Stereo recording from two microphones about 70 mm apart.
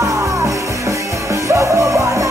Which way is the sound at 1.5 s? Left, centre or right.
Right.